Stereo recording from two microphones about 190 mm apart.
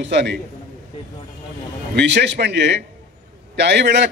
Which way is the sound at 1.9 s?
65° right (ahead or behind).